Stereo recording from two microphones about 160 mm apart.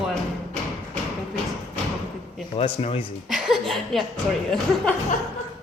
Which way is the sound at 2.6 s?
40° left (ahead or behind).